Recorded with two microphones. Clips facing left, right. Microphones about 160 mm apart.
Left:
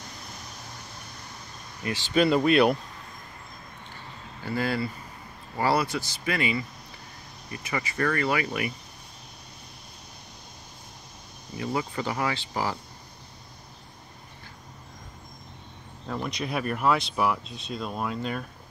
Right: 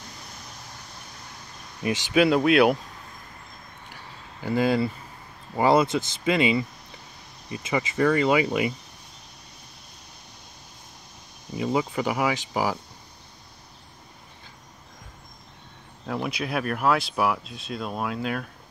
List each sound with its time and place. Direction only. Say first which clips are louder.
1.8 s speech: right 5 dB; 20° right (ahead or behind)
2.1 s speech: right 2 dB; centre (ahead or behind)
3.9 s a sound: left 1 dB; 15° right (ahead or behind)
5.6 s speech: right 5 dB; 20° right (ahead or behind)
11.5 s speech: right 4 dB; 20° right (ahead or behind)
16.1 s speech: right 2 dB; 5° right (ahead or behind)